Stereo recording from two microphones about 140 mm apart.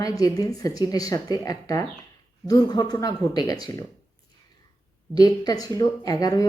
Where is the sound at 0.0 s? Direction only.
25° left (ahead or behind).